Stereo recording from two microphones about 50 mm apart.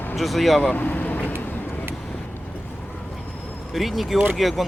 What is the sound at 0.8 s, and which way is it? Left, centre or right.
Vehicle, left.